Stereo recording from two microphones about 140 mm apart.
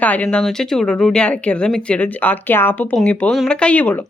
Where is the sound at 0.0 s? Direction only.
10° left (ahead or behind).